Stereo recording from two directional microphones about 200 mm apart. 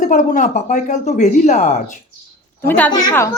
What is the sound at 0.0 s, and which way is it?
Speech, 40° left (ahead or behind).